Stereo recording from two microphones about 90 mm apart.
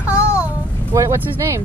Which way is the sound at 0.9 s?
35° right (ahead or behind).